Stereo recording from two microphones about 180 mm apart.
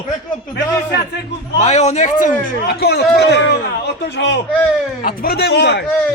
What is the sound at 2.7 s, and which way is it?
A man's voice, 60° left (ahead or behind).